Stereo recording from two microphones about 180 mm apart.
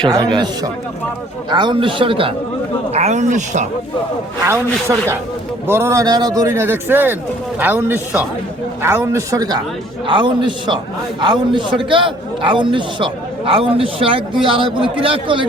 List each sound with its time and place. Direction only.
0.0 s a man's voice: 25° right (ahead or behind); by 3.7 s 40° right (ahead or behind)
4.4 s a man's voice: 15° right (ahead or behind)